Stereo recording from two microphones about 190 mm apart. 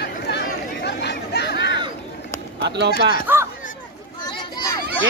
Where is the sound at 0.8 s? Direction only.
60° left (ahead or behind).